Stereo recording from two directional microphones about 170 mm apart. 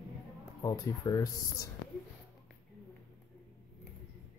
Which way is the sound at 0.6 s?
20° left (ahead or behind).